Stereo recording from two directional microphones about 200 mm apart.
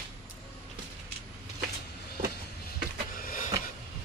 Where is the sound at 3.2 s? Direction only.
45° left (ahead or behind).